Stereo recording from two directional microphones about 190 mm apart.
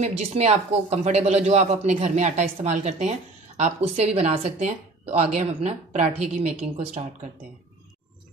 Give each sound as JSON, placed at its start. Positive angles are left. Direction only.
{"t": 0.0, "sound": "speech", "side_deg": -35}